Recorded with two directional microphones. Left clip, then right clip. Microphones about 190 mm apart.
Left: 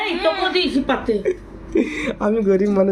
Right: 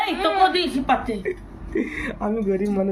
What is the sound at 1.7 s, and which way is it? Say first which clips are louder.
Speech: left 5 dB; 5° left (ahead or behind).